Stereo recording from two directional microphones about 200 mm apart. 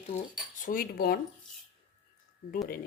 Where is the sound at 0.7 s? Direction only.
45° left (ahead or behind).